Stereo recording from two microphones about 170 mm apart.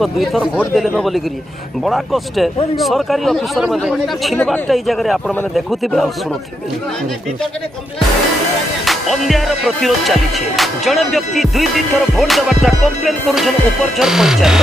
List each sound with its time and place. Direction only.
0.0 s a man's voice: centre (ahead or behind)
8.8 s a man's voice: centre (ahead or behind)